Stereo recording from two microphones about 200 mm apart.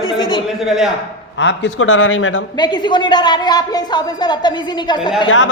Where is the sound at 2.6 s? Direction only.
25° left (ahead or behind).